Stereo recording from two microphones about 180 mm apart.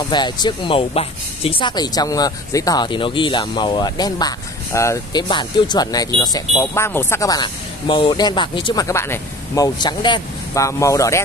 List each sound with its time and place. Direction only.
0.1 s speech: 25° left (ahead or behind)